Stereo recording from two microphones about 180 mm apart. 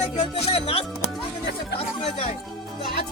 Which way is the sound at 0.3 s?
35° left (ahead or behind).